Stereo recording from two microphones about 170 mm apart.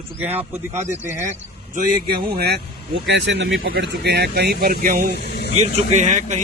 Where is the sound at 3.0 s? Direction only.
90° right; by 5.1 s 55° right (ahead or behind).